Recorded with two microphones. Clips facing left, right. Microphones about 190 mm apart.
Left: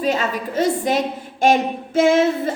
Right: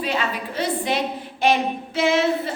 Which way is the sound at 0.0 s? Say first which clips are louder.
Left 4 dB; 45° left (ahead or behind).